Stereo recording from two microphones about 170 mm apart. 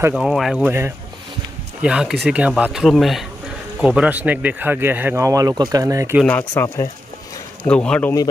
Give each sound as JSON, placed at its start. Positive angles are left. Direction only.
{"t": 0.1, "sound": "speech", "side_deg": 0}
{"t": 0.6, "sound": "speech", "side_deg": -15}
{"t": 6.2, "sound": "speech", "side_deg": 10}